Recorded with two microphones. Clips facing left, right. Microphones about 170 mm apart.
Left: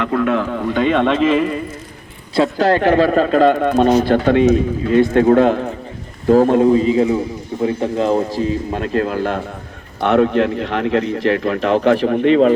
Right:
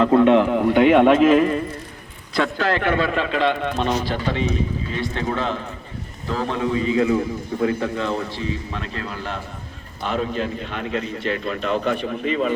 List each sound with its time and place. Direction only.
0.0 s a man's voice: 25° right (ahead or behind); by 1.5 s centre (ahead or behind)
2.3 s a man's voice: 35° left (ahead or behind)
6.9 s a man's voice: 25° left (ahead or behind); by 9.4 s 50° left (ahead or behind)
10.0 s a man's voice: 65° left (ahead or behind)